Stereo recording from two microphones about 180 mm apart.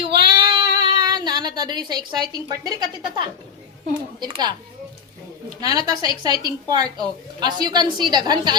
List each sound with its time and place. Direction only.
0.0 s child singing: 25° right (ahead or behind)
4.2 s a woman's voice: 25° right (ahead or behind)
5.5 s a woman's voice: 20° right (ahead or behind)